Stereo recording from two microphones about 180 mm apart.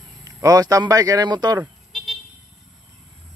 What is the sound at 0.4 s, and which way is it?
Speech, 20° right (ahead or behind).